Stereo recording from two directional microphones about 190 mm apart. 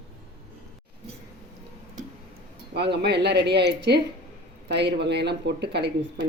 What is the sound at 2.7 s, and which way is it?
Speech, 60° right (ahead or behind).